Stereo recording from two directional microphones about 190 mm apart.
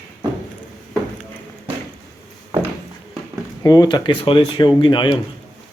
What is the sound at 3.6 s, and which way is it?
Speech, 20° left (ahead or behind).